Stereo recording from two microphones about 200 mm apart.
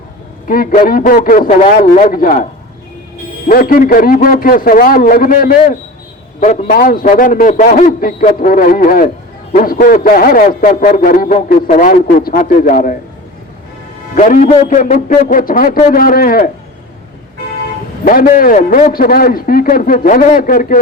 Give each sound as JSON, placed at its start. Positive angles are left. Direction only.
{"t": 0.4, "sound": "a man's voice", "side_deg": 45}
{"t": 14.2, "sound": "a man's voice", "side_deg": 40}
{"t": 18.0, "sound": "a man's voice", "side_deg": 45}